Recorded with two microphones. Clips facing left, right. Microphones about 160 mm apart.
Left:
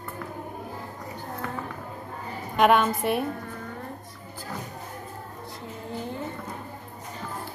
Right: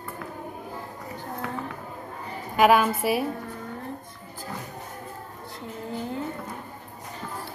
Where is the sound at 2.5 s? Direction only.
5° right (ahead or behind).